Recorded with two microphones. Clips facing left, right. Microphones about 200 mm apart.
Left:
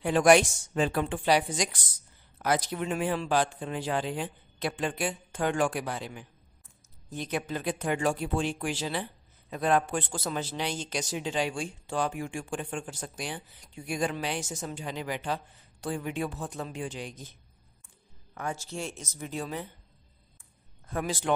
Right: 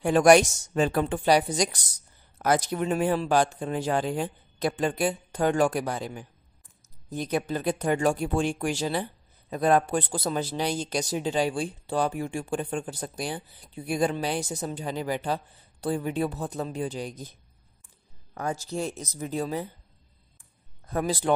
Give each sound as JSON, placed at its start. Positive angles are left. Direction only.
{"t": 0.0, "sound": "speech", "side_deg": -45}
{"t": 18.3, "sound": "speech", "side_deg": -35}
{"t": 20.9, "sound": "speech", "side_deg": -35}